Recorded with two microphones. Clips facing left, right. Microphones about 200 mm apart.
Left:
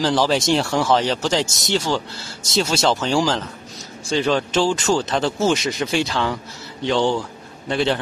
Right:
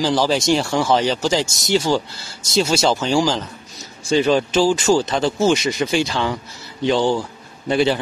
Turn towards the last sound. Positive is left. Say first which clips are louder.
# right 3 dB
turn(degrees=-5)  # may be behind; listen again after turning